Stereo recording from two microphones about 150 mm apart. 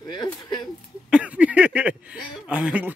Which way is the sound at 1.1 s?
10° right (ahead or behind).